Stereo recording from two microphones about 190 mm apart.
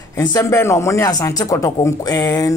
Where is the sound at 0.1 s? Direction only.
15° left (ahead or behind).